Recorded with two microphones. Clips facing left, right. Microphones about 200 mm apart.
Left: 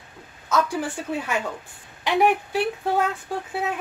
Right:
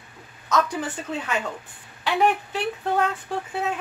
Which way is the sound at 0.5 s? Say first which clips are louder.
Left 1 dB; 10° left (ahead or behind).